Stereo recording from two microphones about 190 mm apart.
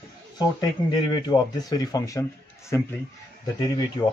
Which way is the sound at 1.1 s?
20° left (ahead or behind).